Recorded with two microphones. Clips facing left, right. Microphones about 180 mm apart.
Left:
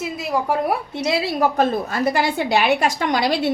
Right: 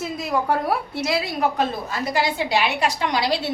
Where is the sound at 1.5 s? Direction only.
55° left (ahead or behind).